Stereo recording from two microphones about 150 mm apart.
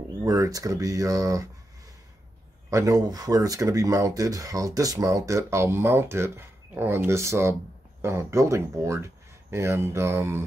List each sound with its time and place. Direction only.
0.2 s speech: 20° right (ahead or behind)
2.7 s speech: 25° right (ahead or behind)